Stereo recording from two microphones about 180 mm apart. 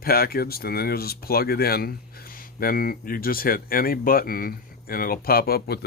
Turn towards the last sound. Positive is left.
turn(degrees=60)  # may be behind; listen again after turning